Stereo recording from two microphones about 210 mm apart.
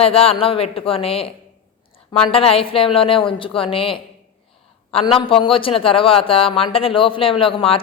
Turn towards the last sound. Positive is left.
turn(degrees=25)  # may be behind; listen again after turning